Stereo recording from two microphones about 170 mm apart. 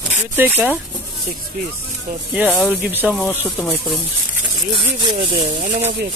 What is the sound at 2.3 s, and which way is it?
Speech, 5° right (ahead or behind).